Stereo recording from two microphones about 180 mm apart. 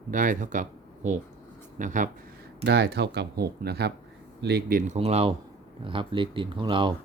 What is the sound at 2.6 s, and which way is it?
Speech, 65° right (ahead or behind).